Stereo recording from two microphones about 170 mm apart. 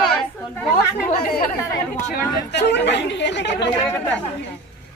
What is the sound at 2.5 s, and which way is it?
Speech, 90° left.